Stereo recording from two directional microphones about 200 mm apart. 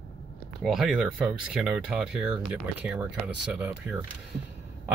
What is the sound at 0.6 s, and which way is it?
Speech, centre (ahead or behind).